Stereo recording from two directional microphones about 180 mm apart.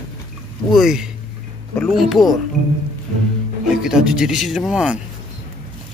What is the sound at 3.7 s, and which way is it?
Speech, 5° right (ahead or behind).